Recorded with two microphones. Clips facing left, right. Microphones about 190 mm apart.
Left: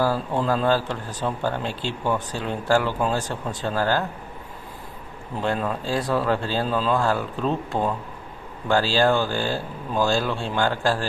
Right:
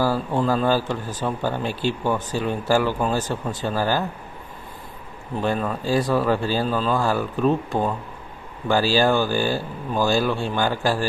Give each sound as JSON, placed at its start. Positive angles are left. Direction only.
{"t": 0.0, "sound": "speech", "side_deg": -5}
{"t": 5.4, "sound": "speech", "side_deg": -5}